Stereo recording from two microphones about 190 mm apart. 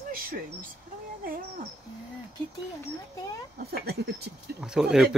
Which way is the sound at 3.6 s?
55° right (ahead or behind).